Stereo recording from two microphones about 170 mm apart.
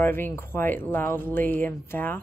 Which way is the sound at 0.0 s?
15° left (ahead or behind).